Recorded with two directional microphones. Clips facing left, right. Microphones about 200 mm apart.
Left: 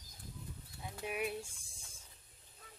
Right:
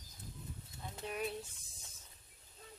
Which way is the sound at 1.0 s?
10° left (ahead or behind).